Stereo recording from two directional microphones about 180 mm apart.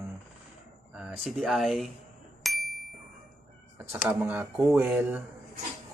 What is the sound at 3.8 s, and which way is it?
Speech, 15° right (ahead or behind).